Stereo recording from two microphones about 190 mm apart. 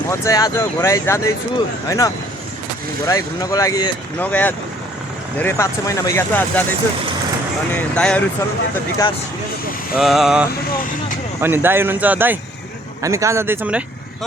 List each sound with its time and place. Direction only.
0.1 s speech: 20° left (ahead or behind)
4.2 s speech: 10° left (ahead or behind)
7.7 s speech: 5° left (ahead or behind)
10.0 s vehicle: centre (ahead or behind)
11.3 s speech: 10° right (ahead or behind)